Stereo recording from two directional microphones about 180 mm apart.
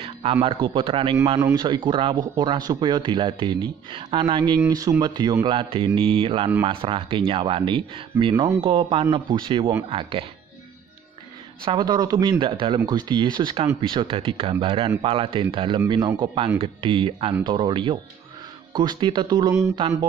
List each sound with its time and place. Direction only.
0.0 s speech: 30° right (ahead or behind)
11.6 s speech: 25° right (ahead or behind)